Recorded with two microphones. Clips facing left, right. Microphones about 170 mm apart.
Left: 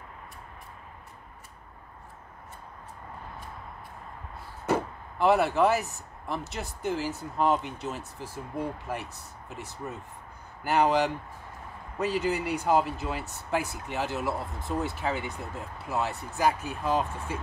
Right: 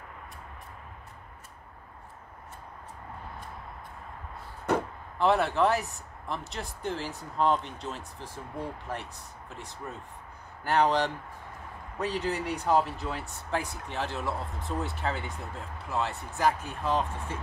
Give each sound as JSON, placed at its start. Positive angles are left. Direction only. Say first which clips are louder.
{"t": 4.6, "sound": "speech", "louder": "left 1 dB", "side_deg": 5}
{"t": 10.6, "sound": "speech", "louder": "left 1 dB", "side_deg": 5}